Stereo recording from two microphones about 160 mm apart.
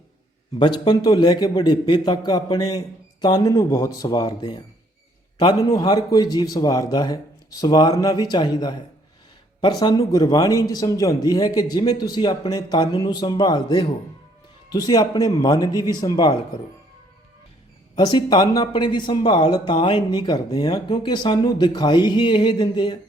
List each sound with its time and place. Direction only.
0.6 s speech: 25° left (ahead or behind)
17.9 s speech: 25° left (ahead or behind)